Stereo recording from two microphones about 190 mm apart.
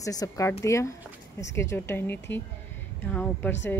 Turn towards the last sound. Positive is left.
turn(degrees=10)  # may be behind; listen again after turning